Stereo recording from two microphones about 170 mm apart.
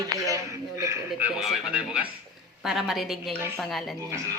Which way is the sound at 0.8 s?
15° right (ahead or behind).